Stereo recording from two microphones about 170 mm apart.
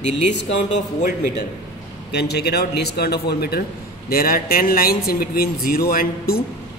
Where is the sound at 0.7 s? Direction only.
45° left (ahead or behind).